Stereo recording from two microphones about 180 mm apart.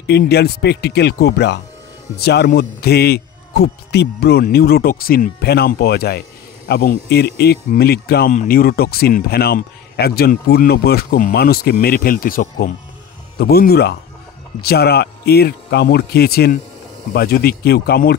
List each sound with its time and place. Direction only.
0.0 s speech: 65° left (ahead or behind)
8.3 s speech: 50° left (ahead or behind)